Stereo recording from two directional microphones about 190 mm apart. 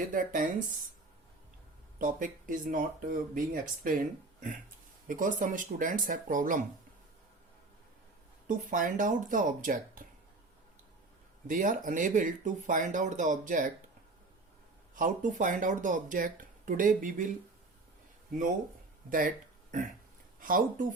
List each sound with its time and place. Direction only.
0.1 s speech: 45° right (ahead or behind)
2.0 s speech: 45° right (ahead or behind)
8.4 s speech: 45° right (ahead or behind)
11.4 s speech: 45° right (ahead or behind)
14.9 s speech: 45° right (ahead or behind)
20.4 s speech: 45° right (ahead or behind)